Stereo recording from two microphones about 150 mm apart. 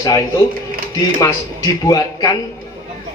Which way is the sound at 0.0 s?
25° left (ahead or behind).